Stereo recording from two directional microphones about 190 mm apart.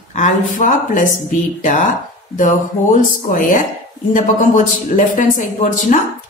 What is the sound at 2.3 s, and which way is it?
Speech, 40° left (ahead or behind).